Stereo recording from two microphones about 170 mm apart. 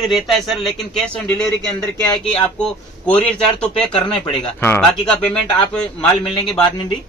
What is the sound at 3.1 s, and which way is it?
Speech, 5° left (ahead or behind).